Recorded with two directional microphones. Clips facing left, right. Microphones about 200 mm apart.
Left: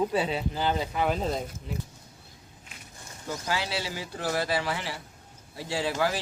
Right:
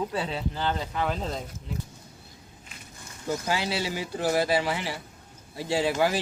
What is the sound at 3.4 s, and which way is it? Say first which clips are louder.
Speech: even; 15° right (ahead or behind).